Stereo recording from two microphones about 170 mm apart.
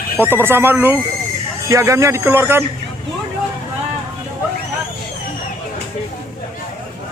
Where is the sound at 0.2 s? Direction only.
15° right (ahead or behind).